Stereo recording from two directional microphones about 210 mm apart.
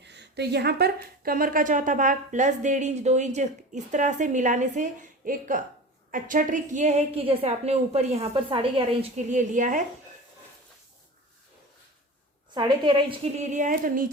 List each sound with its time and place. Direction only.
0.0 s a woman's voice: 55° right (ahead or behind); by 9.8 s 35° right (ahead or behind)
12.5 s a woman's voice: 20° right (ahead or behind); by 14.1 s 40° right (ahead or behind)